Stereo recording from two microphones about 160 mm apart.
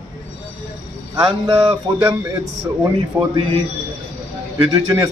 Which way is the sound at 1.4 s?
25° right (ahead or behind).